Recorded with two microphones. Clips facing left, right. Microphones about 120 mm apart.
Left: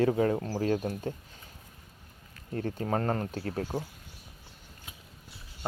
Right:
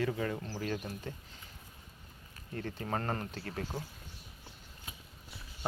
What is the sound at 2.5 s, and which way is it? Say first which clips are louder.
Speech: left 6 dB; 40° left (ahead or behind).